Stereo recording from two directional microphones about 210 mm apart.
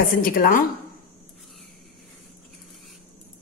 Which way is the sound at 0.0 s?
45° left (ahead or behind).